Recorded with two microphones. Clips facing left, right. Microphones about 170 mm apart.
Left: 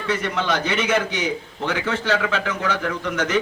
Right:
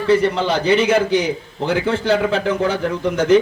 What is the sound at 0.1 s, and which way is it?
A man's voice, 30° right (ahead or behind).